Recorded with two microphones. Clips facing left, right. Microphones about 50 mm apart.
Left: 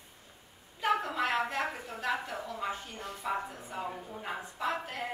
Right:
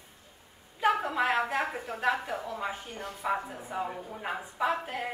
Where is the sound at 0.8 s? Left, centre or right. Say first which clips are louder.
Right 3 dB; centre.